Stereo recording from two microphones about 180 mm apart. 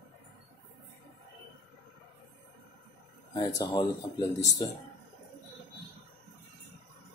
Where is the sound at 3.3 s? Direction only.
25° left (ahead or behind).